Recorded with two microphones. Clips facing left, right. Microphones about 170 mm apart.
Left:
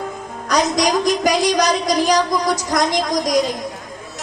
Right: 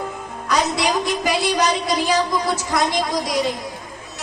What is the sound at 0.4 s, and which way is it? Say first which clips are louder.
A woman's voice: left 3 dB; 40° left (ahead or behind).